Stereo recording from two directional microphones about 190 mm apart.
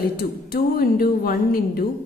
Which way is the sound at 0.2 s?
50° left (ahead or behind).